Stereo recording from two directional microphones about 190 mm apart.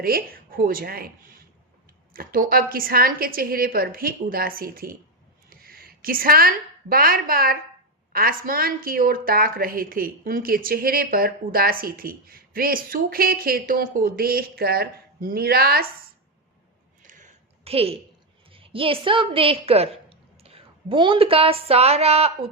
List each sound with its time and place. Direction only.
0.0 s a woman's voice: 50° right (ahead or behind)
17.0 s a sound: 40° right (ahead or behind)
18.5 s a woman's voice: 30° right (ahead or behind)